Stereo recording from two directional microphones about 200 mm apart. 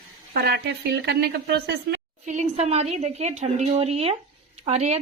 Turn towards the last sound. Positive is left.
turn(degrees=-35)  # may be behind; listen again after turning